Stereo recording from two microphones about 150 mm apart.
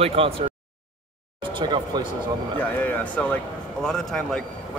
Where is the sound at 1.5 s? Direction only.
30° right (ahead or behind).